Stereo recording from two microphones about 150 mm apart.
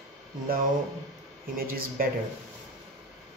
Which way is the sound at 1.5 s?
80° right.